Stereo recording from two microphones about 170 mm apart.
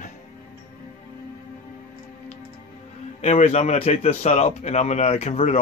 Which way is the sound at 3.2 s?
40° left (ahead or behind).